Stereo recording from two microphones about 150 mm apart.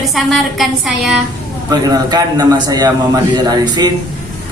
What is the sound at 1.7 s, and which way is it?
A man's voice, 25° right (ahead or behind).